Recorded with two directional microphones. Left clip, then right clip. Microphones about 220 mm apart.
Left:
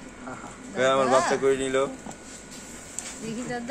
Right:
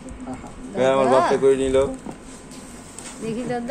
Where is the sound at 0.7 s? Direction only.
10° left (ahead or behind).